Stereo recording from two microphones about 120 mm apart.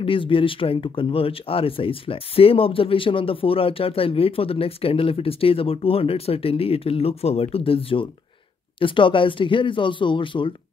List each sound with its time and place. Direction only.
0.0 s speech: 45° left (ahead or behind)